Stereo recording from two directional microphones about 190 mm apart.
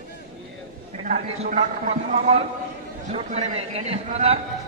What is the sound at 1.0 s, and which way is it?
A man's voice, 40° right (ahead or behind).